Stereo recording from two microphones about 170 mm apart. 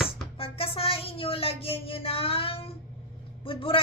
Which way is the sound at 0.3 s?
35° left (ahead or behind).